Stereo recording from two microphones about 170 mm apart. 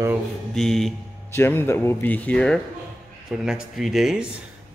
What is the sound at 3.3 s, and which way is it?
Speech, 5° right (ahead or behind).